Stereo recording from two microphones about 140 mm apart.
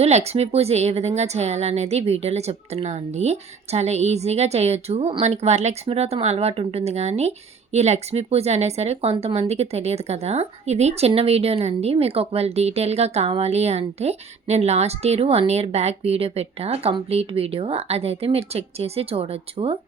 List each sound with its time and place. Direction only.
0.0 s a woman's voice: 50° right (ahead or behind)